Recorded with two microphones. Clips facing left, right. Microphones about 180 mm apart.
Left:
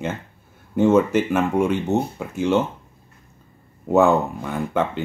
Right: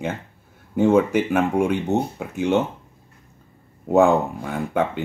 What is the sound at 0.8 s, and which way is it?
Speech, 15° right (ahead or behind).